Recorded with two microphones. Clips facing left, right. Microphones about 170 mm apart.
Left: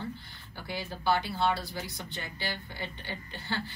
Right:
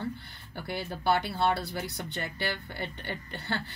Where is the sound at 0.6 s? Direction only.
60° right (ahead or behind).